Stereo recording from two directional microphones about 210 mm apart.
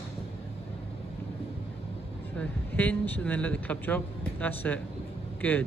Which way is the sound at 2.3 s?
5° left (ahead or behind).